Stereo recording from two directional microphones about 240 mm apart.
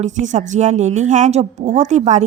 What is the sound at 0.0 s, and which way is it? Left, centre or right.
A woman's voice, right.